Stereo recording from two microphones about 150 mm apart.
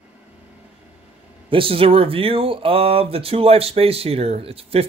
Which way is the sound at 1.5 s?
35° right (ahead or behind).